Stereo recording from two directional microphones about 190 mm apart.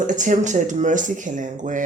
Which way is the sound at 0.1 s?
40° right (ahead or behind).